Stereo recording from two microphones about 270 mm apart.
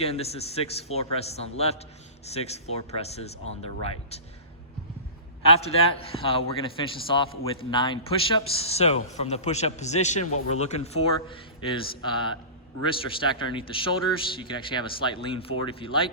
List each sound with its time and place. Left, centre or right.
0.0 s speech: left
5.6 s speech: left